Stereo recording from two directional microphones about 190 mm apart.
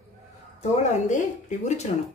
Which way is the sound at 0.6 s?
40° left (ahead or behind).